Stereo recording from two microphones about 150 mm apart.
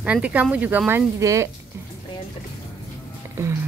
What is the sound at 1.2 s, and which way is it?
Speech, 20° right (ahead or behind).